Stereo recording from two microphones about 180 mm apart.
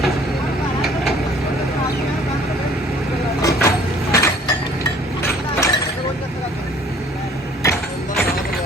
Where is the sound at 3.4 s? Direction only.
15° left (ahead or behind).